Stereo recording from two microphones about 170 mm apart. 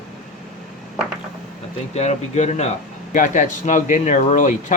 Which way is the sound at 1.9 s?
40° left (ahead or behind).